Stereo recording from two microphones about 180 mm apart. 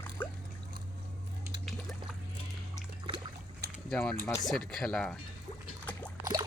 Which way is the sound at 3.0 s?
25° right (ahead or behind).